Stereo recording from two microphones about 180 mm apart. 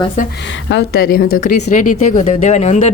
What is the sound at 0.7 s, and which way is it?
A woman's voice, 70° left (ahead or behind).